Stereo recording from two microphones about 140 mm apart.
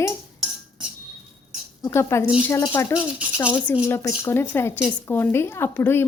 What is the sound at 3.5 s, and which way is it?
Speech, 15° left (ahead or behind).